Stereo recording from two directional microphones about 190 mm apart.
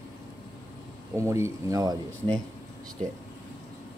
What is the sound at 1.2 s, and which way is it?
Speech, 15° right (ahead or behind).